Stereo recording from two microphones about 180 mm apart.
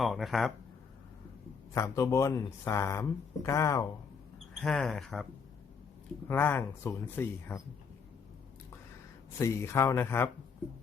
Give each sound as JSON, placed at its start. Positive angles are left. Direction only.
{"t": 0.0, "sound": "speech", "side_deg": 0}
{"t": 1.7, "sound": "speech", "side_deg": 15}
{"t": 4.6, "sound": "speech", "side_deg": 5}
{"t": 6.2, "sound": "speech", "side_deg": 10}
{"t": 9.4, "sound": "speech", "side_deg": 15}